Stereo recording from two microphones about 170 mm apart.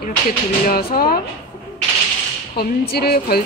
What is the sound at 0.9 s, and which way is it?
Speech, 60° left (ahead or behind).